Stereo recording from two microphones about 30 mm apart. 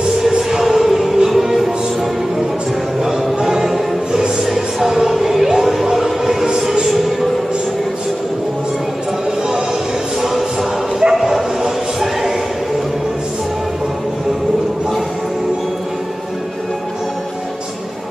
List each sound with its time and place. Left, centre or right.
0.3 s music: centre
3.3 s music: centre
5.9 s a sound: centre
6.9 s music: centre
11.0 s bow-wow: centre
12.0 s a sound: centre